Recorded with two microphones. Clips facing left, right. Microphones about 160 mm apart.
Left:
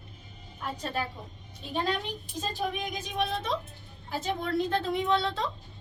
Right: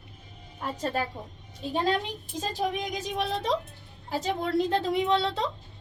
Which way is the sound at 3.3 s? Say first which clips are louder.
Right 4 dB; 35° right (ahead or behind).